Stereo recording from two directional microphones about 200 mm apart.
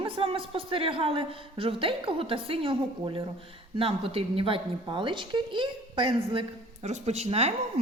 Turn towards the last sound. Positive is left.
turn(degrees=-30)  # may be behind; listen again after turning